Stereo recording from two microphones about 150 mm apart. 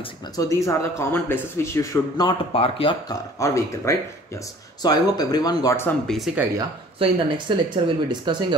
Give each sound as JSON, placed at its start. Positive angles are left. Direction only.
{"t": 0.4, "sound": "a man's voice", "side_deg": 20}
{"t": 2.2, "sound": "speech", "side_deg": 40}
{"t": 3.3, "sound": "a man's voice", "side_deg": 20}
{"t": 6.0, "sound": "speech", "side_deg": 0}
{"t": 7.0, "sound": "speech", "side_deg": -35}